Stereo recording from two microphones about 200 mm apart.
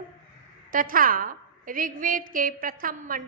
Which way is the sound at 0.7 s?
45° right (ahead or behind).